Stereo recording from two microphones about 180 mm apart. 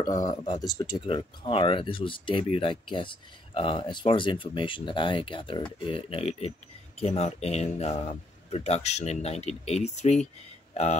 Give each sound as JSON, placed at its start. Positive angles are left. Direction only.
{"t": 0.0, "sound": "speech", "side_deg": 20}